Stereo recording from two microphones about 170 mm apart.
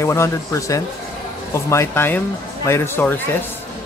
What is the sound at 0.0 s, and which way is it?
Speech, 15° left (ahead or behind).